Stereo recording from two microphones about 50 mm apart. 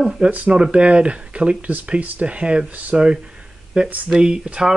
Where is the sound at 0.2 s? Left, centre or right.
Right.